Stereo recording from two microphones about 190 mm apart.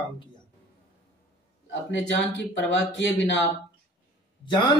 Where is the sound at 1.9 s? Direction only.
70° left (ahead or behind).